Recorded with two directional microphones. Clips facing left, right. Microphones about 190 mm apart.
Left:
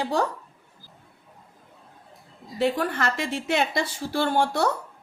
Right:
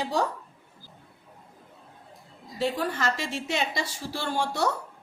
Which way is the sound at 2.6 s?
60° left (ahead or behind).